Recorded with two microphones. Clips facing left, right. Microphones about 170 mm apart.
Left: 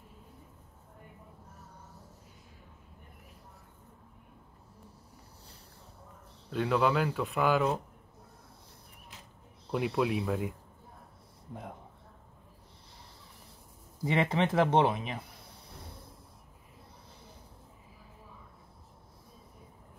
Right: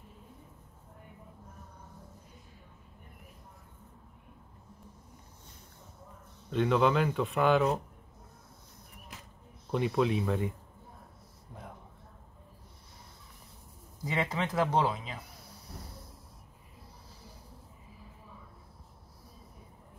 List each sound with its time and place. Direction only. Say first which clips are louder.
6.5 s speech: right 2 dB; centre (ahead or behind)
9.7 s speech: right 1 dB; 5° left (ahead or behind)
14.0 s speech: left 4 dB; 25° left (ahead or behind)